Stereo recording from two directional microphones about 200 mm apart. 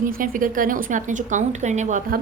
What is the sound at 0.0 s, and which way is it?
A woman's voice, 45° right (ahead or behind).